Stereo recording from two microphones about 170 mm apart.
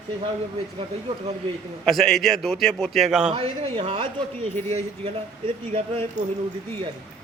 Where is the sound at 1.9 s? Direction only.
Centre (ahead or behind).